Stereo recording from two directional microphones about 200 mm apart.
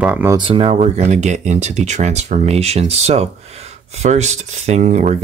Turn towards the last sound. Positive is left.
turn(degrees=-35)  # may be behind; listen again after turning